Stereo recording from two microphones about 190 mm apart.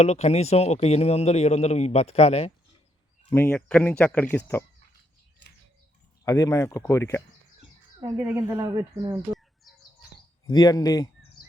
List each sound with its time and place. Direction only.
0.0 s speech: 35° left (ahead or behind)
3.2 s speech: 10° left (ahead or behind)
6.2 s speech: 15° left (ahead or behind)
8.0 s speech: 10° right (ahead or behind)
9.7 s bird: centre (ahead or behind)
10.4 s speech: 20° left (ahead or behind)
11.4 s bird: 25° left (ahead or behind)